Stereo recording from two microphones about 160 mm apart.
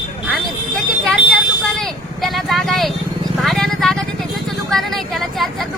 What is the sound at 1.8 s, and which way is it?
Speech, centre (ahead or behind).